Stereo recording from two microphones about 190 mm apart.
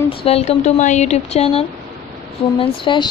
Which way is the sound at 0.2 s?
30° left (ahead or behind).